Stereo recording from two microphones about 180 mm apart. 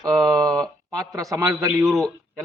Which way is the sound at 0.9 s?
20° right (ahead or behind).